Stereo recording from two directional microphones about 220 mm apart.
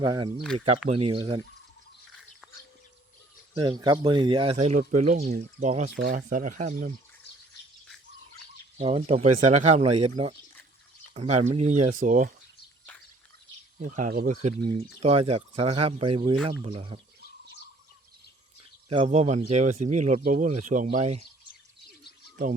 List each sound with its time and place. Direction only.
0.0 s speech: 20° right (ahead or behind)
3.6 s speech: 20° right (ahead or behind); by 6.9 s 35° right (ahead or behind)
8.8 s speech: 30° right (ahead or behind)
13.7 s speech: 35° right (ahead or behind)
14.6 s speech: 25° right (ahead or behind)
18.9 s speech: 25° right (ahead or behind)